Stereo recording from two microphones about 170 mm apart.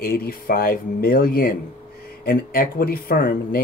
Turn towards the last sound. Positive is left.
turn(degrees=60)  # may be behind; listen again after turning